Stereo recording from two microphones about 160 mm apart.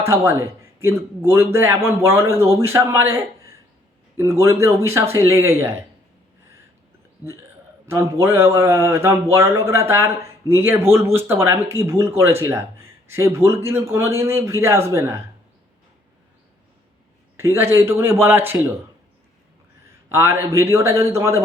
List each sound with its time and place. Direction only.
0.0 s speech: 15° right (ahead or behind)
7.9 s speech: 15° right (ahead or behind)
17.3 s speech: 15° right (ahead or behind)
20.1 s speech: 15° right (ahead or behind)